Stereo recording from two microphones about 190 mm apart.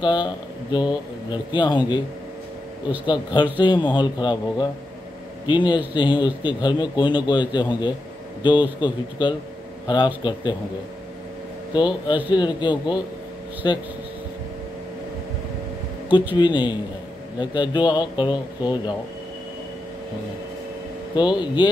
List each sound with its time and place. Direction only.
0.0 s speech: 20° left (ahead or behind)
3.5 s speech: 25° left (ahead or behind)
11.7 s speech: 25° left (ahead or behind)
16.3 s speech: 25° left (ahead or behind)
21.2 s speech: 25° left (ahead or behind)